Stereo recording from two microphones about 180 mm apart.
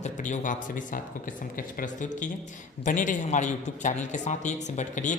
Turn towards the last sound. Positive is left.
turn(degrees=45)  # may be behind; listen again after turning